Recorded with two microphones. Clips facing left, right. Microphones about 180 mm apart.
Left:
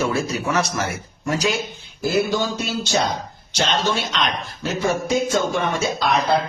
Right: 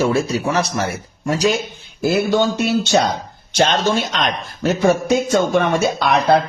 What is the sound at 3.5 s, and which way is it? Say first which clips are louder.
A man's voice: right 5 dB; 55° right (ahead or behind).